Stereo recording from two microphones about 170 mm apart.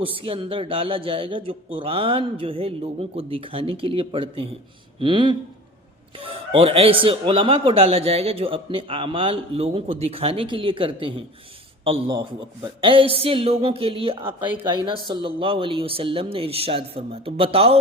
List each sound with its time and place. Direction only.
0.0 s a man's voice: 30° right (ahead or behind)